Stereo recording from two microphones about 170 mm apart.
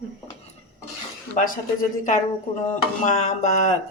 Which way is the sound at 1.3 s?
50° left (ahead or behind).